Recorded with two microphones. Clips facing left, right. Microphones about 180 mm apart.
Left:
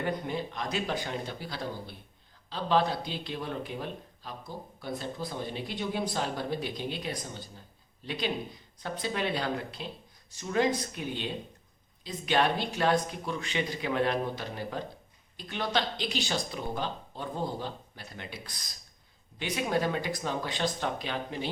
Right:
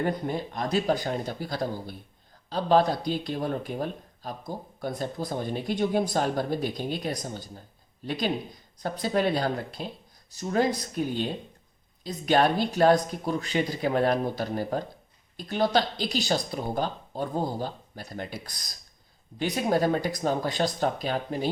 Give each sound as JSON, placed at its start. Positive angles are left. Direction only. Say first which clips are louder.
{"t": 0.0, "sound": "speech", "louder": "right 4 dB", "side_deg": -40}